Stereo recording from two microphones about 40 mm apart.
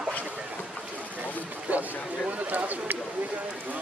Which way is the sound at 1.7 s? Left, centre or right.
Right.